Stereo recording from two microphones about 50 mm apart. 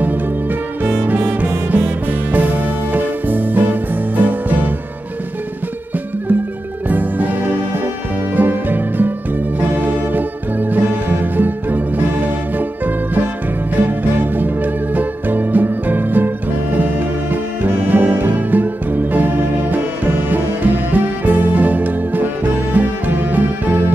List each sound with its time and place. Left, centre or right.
0.8 s music: right
6.9 s music: right